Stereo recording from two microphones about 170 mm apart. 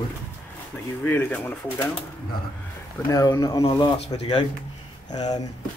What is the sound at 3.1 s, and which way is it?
Speech, 20° left (ahead or behind).